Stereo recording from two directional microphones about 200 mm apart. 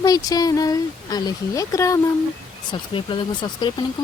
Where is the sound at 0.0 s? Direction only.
20° left (ahead or behind).